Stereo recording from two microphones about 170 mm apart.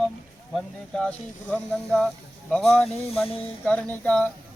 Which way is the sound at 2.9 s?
35° left (ahead or behind).